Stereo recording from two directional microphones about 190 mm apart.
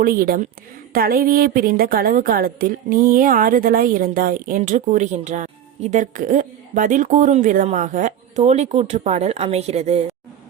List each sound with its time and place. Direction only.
0.0 s a woman's voice: 50° right (ahead or behind); by 10.0 s 35° right (ahead or behind)